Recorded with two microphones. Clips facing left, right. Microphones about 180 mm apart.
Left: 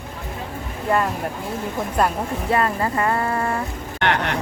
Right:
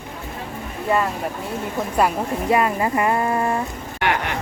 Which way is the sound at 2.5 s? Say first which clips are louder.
Right 2 dB; 15° right (ahead or behind).